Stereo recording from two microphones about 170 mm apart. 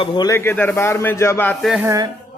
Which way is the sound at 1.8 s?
20° right (ahead or behind).